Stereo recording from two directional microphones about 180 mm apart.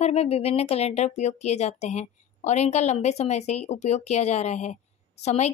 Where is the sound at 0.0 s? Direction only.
35° left (ahead or behind).